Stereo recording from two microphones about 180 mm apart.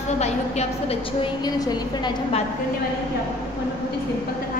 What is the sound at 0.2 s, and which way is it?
A woman's voice, 35° left (ahead or behind).